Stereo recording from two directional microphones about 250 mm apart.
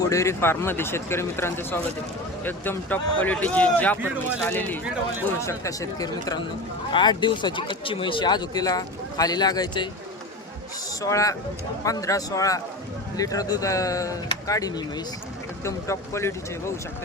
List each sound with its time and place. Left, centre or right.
0.0 s speech: centre
11.0 s speech: centre